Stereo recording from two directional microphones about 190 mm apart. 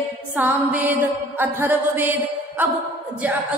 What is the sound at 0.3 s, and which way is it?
Mantra, 10° right (ahead or behind).